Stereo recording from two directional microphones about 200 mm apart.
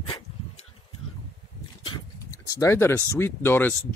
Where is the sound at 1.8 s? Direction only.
20° left (ahead or behind).